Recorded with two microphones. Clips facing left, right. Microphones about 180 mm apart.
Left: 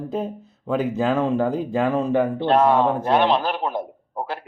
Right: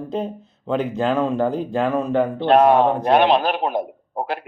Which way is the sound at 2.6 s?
15° right (ahead or behind).